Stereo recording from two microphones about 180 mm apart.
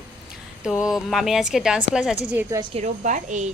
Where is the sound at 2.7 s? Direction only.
40° right (ahead or behind).